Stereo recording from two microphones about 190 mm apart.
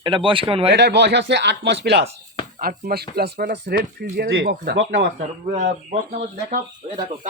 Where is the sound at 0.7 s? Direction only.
65° right (ahead or behind).